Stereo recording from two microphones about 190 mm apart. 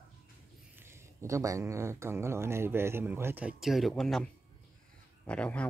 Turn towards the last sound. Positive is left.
turn(degrees=5)  # may be behind; listen again after turning